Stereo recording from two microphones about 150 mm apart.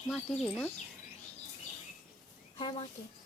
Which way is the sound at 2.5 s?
35° left (ahead or behind).